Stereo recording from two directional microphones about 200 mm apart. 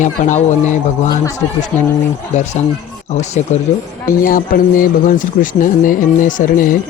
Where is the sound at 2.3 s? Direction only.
35° left (ahead or behind).